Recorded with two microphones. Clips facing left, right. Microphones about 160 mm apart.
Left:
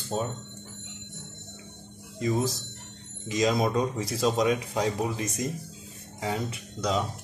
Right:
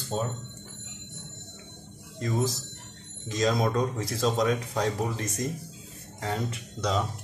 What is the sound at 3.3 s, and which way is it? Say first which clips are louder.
Speech: left 1 dB; 10° left (ahead or behind).